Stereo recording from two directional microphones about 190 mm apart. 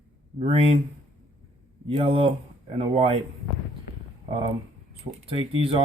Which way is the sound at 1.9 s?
30° right (ahead or behind).